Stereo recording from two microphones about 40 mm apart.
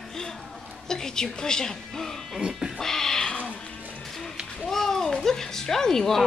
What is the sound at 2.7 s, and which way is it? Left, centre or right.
Music, centre.